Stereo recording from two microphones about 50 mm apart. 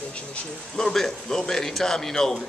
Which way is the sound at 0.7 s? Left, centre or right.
Centre.